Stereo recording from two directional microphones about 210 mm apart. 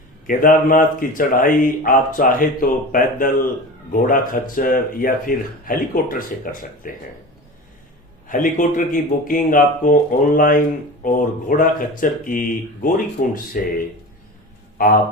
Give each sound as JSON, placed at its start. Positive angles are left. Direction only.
{"t": 0.3, "sound": "speech", "side_deg": 40}
{"t": 8.3, "sound": "speech", "side_deg": 40}